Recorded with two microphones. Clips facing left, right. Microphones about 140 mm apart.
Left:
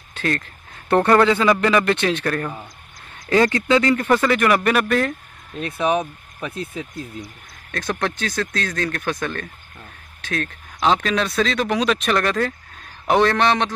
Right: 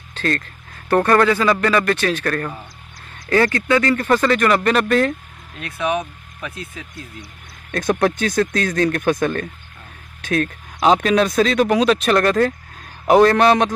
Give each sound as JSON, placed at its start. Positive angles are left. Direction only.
{"t": 0.1, "sound": "a man's voice", "side_deg": 15}
{"t": 5.6, "sound": "speech", "side_deg": 30}
{"t": 7.7, "sound": "speech", "side_deg": -15}